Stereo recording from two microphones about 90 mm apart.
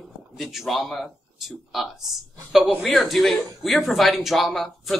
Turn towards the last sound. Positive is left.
turn(degrees=0)  # may be behind; listen again after turning